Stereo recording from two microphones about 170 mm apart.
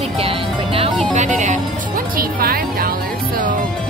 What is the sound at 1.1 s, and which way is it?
Music, 45° right (ahead or behind).